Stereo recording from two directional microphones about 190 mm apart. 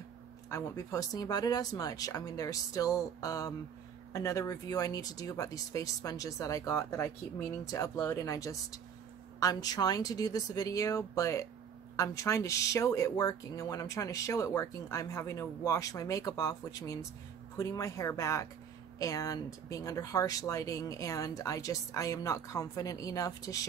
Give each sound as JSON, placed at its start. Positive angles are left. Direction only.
{"t": 0.5, "sound": "speech", "side_deg": 15}